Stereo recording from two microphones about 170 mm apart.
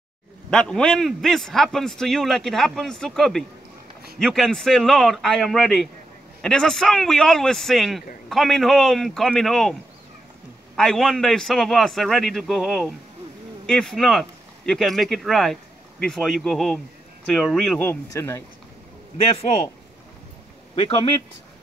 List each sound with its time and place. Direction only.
0.5 s a man's voice: 5° left (ahead or behind)
10.8 s a man's voice: centre (ahead or behind)
18.1 s speech: 15° left (ahead or behind)
19.1 s a man's voice: 35° left (ahead or behind)
20.7 s a man's voice: 30° left (ahead or behind)